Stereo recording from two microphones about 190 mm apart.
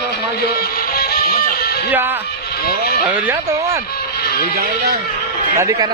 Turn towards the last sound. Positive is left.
turn(degrees=-15)  # may be behind; listen again after turning